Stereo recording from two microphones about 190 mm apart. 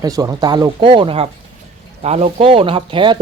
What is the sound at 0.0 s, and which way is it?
Speech, 20° right (ahead or behind).